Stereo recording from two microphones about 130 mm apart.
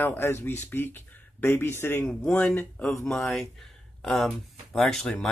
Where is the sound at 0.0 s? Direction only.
20° left (ahead or behind).